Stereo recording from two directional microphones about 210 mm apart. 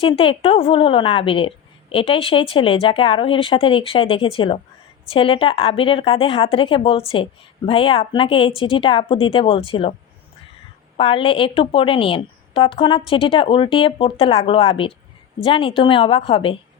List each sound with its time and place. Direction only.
0.0 s a woman's voice: 25° left (ahead or behind)
10.9 s a woman's voice: 25° left (ahead or behind)